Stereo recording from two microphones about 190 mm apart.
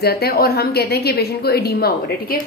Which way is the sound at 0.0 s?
55° left (ahead or behind).